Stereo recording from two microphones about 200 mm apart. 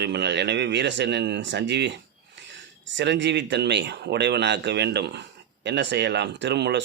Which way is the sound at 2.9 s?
60° right (ahead or behind).